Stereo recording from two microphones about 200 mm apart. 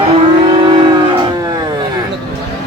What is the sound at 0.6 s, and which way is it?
Music, 25° right (ahead or behind).